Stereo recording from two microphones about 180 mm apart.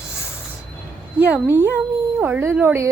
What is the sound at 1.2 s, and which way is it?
A woman's voice, 10° right (ahead or behind).